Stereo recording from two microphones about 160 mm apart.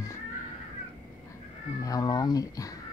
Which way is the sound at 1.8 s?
25° left (ahead or behind).